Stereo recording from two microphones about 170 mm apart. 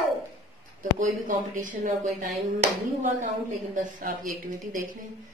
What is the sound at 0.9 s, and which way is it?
Speech, 50° right (ahead or behind).